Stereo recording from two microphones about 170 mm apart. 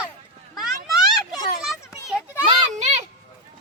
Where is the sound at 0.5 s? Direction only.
Centre (ahead or behind).